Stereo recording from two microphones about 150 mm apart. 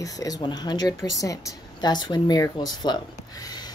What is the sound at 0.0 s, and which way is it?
Speech, 25° left (ahead or behind).